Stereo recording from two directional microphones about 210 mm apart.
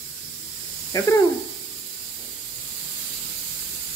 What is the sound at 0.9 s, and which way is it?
Speech, 15° left (ahead or behind).